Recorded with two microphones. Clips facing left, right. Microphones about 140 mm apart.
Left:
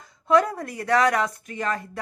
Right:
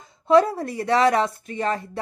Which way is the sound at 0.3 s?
30° right (ahead or behind).